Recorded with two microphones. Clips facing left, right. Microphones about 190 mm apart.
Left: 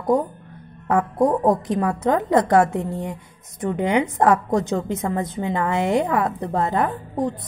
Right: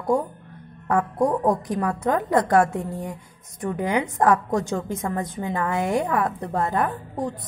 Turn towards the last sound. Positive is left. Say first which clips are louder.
# left 4 dB
turn(degrees=20)  # may be behind; listen again after turning